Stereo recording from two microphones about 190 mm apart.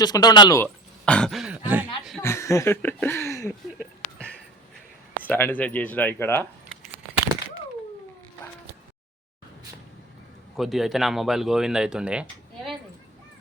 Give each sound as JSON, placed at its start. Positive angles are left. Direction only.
{"t": 0.0, "sound": "speech", "side_deg": 20}
{"t": 1.0, "sound": "speech", "side_deg": 5}
{"t": 2.2, "sound": "speech", "side_deg": 15}
{"t": 3.8, "sound": "a sound", "side_deg": 5}
{"t": 5.1, "sound": "speech", "side_deg": 10}
{"t": 10.6, "sound": "speech", "side_deg": 0}